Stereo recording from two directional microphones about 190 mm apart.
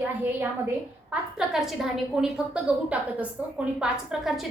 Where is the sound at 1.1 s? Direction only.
5° right (ahead or behind).